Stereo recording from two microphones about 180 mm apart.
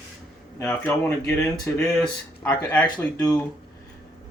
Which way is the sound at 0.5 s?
15° left (ahead or behind).